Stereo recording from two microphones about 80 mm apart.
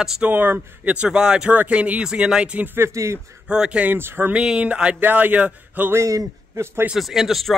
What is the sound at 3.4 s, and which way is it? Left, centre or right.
Speech, centre.